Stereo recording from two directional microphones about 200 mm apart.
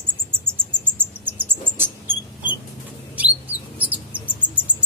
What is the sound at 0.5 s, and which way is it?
Cricket, 10° right (ahead or behind).